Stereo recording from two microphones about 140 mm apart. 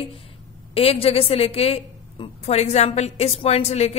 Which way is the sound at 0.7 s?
45° left (ahead or behind).